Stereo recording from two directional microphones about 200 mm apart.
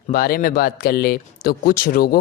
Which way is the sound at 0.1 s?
50° left (ahead or behind).